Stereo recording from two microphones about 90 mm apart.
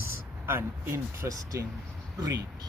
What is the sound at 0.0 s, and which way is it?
Speech, 30° right (ahead or behind).